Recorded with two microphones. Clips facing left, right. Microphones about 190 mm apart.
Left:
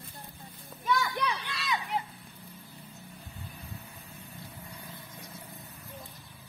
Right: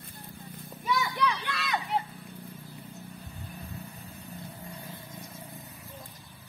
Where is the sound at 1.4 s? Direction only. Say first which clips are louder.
Right 2 dB; 55° right (ahead or behind).